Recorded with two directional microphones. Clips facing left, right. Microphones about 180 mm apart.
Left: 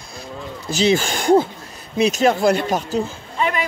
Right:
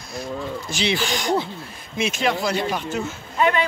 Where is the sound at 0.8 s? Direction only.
45° left (ahead or behind).